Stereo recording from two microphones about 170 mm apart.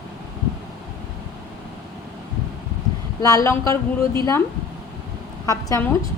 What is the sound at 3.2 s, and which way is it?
Speech, 20° left (ahead or behind).